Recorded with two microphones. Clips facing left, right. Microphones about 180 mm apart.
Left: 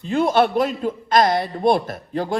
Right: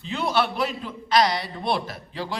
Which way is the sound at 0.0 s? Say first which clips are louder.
Left 7 dB; 50° left (ahead or behind).